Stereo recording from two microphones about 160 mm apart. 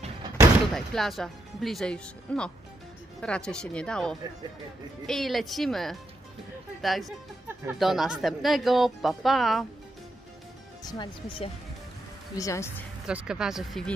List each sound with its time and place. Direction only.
0.7 s speech: centre (ahead or behind)
10.8 s speech: 25° left (ahead or behind)
12.4 s speech: 20° left (ahead or behind)
13.0 s speech: 5° right (ahead or behind)